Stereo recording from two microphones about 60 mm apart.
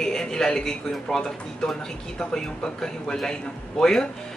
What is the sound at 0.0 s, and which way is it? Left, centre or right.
A man's voice, centre.